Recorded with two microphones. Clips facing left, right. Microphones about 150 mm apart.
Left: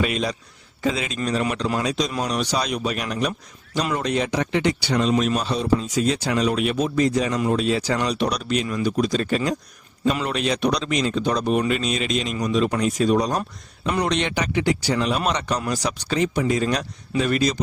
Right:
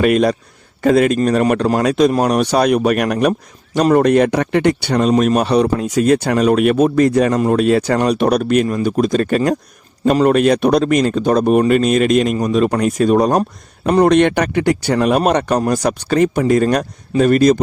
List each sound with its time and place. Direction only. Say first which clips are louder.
0.0 s speech: right 10 dB; 55° right (ahead or behind)